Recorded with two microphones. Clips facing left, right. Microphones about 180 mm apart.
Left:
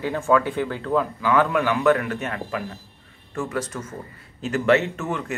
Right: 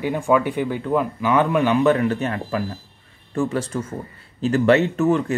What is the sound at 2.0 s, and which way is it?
Speech, 30° right (ahead or behind).